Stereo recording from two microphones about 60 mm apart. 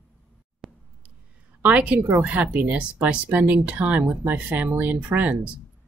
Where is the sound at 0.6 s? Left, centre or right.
Centre.